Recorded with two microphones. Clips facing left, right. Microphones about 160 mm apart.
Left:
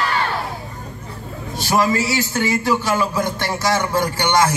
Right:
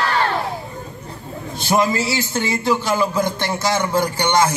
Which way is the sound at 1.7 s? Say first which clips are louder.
Even; 25° right (ahead or behind).